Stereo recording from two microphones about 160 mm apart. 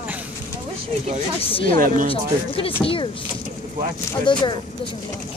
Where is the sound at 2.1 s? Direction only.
35° left (ahead or behind).